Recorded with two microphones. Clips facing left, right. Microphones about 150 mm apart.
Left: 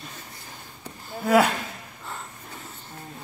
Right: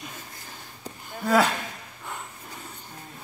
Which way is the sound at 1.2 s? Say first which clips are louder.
Left 2 dB; 5° left (ahead or behind).